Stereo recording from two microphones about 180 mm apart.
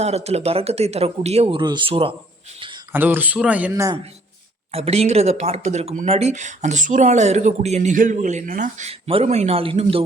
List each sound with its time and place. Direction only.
0.0 s speech: 35° right (ahead or behind)
2.9 s speech: 10° right (ahead or behind)
4.7 s speech: 35° right (ahead or behind)